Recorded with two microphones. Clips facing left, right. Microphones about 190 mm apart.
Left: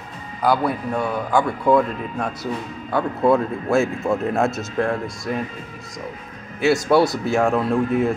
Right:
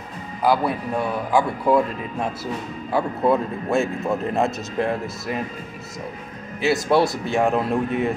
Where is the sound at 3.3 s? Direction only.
Centre (ahead or behind).